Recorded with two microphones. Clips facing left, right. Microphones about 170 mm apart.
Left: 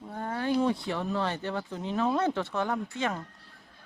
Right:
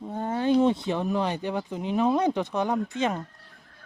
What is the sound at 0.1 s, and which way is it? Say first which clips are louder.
Speech: right 6 dB; 20° right (ahead or behind).